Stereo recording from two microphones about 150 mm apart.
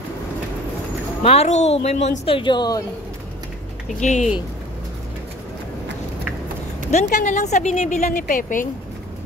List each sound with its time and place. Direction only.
1.2 s a woman's voice: 45° left (ahead or behind); by 2.8 s 30° left (ahead or behind)
4.0 s a woman's voice: 50° left (ahead or behind)
7.1 s a woman's voice: 55° left (ahead or behind)